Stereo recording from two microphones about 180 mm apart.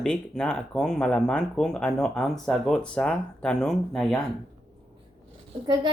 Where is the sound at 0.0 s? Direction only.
5° left (ahead or behind).